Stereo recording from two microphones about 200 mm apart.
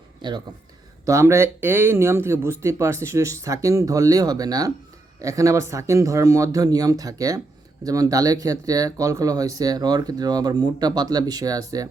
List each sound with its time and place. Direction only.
0.2 s speech: 20° right (ahead or behind)